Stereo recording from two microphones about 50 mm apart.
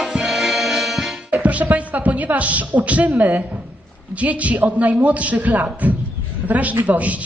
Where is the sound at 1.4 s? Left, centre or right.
Right.